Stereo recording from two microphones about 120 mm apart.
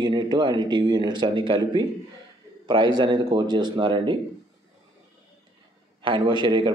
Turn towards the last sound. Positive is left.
turn(degrees=-45)  # may be behind; listen again after turning